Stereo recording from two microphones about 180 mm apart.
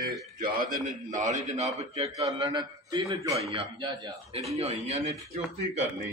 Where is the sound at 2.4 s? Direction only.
25° right (ahead or behind).